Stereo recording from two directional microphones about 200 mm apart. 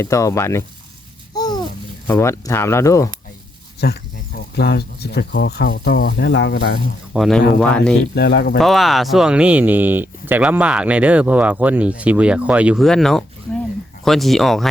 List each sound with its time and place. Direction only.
0.0 s speech: 15° left (ahead or behind)
1.4 s babbling: 20° left (ahead or behind)
2.0 s speech: 15° left (ahead or behind)
3.8 s speech: 55° left (ahead or behind)
7.1 s speech: centre (ahead or behind)
8.1 s speech: 55° left (ahead or behind)
8.5 s speech: centre (ahead or behind)